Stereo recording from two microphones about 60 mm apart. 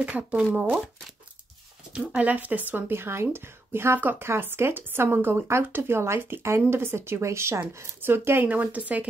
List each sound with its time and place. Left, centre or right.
0.0 s speech: centre
2.1 s a woman's voice: right
8.0 s a woman's voice: right